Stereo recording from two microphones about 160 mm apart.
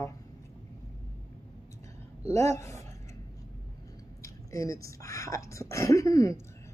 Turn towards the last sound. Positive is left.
turn(degrees=20)  # may be behind; listen again after turning